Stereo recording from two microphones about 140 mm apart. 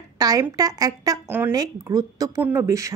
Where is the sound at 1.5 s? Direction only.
25° right (ahead or behind).